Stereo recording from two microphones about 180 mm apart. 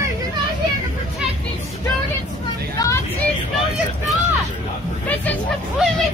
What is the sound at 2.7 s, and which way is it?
Vehicle, 20° left (ahead or behind).